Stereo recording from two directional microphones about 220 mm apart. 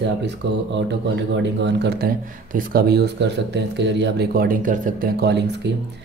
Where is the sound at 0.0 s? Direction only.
50° right (ahead or behind).